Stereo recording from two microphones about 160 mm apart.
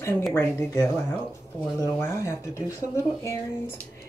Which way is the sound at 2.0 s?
15° left (ahead or behind).